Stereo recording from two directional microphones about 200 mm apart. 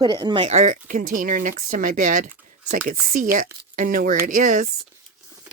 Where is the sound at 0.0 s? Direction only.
25° right (ahead or behind); by 4.6 s 40° right (ahead or behind).